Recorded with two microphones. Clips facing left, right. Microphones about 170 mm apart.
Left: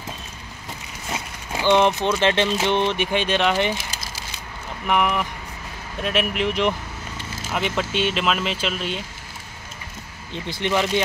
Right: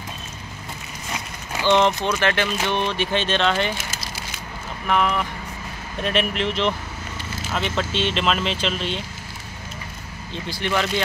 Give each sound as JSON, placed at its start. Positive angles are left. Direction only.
{"t": 1.5, "sound": "a sound", "side_deg": 15}
{"t": 2.0, "sound": "speech", "side_deg": 20}
{"t": 4.8, "sound": "speech", "side_deg": 15}
{"t": 10.3, "sound": "speech", "side_deg": 20}